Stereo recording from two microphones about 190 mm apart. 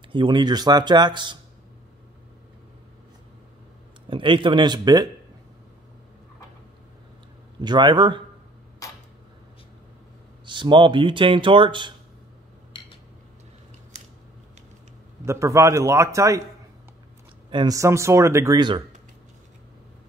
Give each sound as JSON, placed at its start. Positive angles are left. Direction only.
{"t": 0.1, "sound": "speech", "side_deg": -25}
{"t": 4.1, "sound": "speech", "side_deg": -25}
{"t": 7.6, "sound": "speech", "side_deg": -25}
{"t": 10.4, "sound": "speech", "side_deg": -25}
{"t": 15.2, "sound": "speech", "side_deg": -15}
{"t": 17.5, "sound": "speech", "side_deg": -20}